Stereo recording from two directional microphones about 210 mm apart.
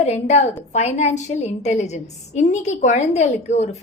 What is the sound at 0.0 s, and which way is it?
A woman's voice, 30° left (ahead or behind).